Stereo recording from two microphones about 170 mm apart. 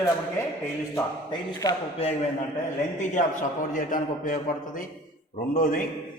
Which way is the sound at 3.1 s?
50° left (ahead or behind).